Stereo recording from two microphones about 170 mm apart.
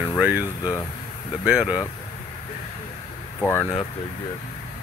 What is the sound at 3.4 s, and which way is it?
Speech, 15° left (ahead or behind).